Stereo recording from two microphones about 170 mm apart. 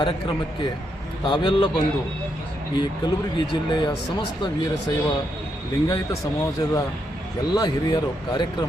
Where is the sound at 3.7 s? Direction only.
25° left (ahead or behind).